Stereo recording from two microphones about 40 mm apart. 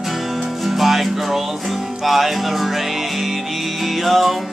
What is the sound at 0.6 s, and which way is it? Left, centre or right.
Music, centre.